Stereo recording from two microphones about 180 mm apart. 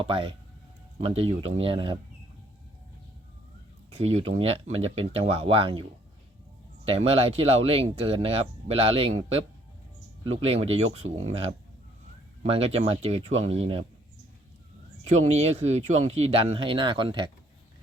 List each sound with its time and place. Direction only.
0.0 s speech: 30° right (ahead or behind)
3.9 s speech: 35° right (ahead or behind)
6.8 s speech: 30° right (ahead or behind)
10.4 s speech: 35° right (ahead or behind)
15.2 s speech: 35° right (ahead or behind)